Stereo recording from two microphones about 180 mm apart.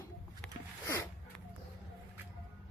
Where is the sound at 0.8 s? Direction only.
15° left (ahead or behind).